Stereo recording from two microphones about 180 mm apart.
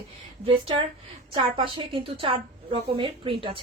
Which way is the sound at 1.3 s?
30° right (ahead or behind).